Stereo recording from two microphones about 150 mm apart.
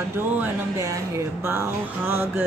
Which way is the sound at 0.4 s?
20° right (ahead or behind).